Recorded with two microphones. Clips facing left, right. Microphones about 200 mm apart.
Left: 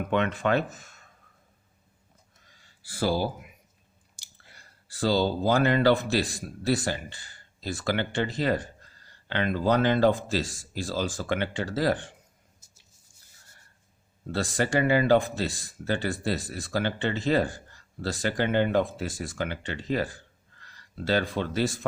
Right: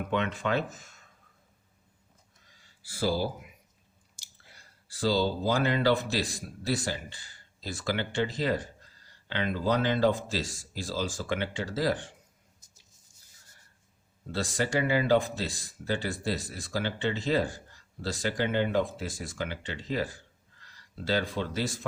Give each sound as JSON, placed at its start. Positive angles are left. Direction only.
{"t": 0.1, "sound": "speech", "side_deg": 55}
{"t": 2.5, "sound": "speech", "side_deg": 60}
{"t": 4.5, "sound": "speech", "side_deg": 60}
{"t": 14.5, "sound": "speech", "side_deg": 55}
{"t": 20.6, "sound": "a sound", "side_deg": 60}